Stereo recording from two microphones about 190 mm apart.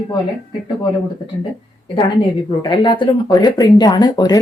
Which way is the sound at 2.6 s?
25° left (ahead or behind).